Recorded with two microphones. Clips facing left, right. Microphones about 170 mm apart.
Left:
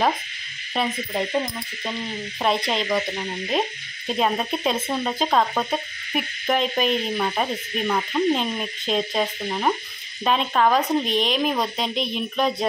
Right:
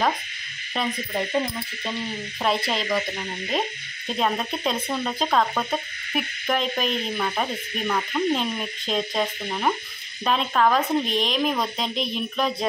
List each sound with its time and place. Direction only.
0.7 s frog: 10° left (ahead or behind)
2.4 s speech: centre (ahead or behind)
4.2 s speech: 5° left (ahead or behind)
4.7 s speech: 20° left (ahead or behind)
5.0 s frog: 10° left (ahead or behind)
10.2 s speech: 5° left (ahead or behind)